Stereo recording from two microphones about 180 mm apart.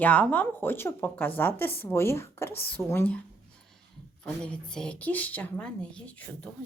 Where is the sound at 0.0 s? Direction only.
10° left (ahead or behind).